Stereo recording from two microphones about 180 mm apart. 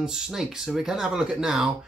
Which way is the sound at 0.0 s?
5° right (ahead or behind).